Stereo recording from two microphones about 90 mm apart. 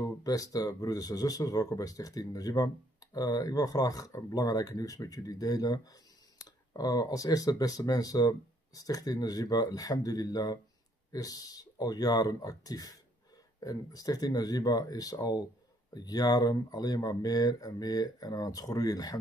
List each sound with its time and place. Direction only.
0.0 s speech: 40° left (ahead or behind)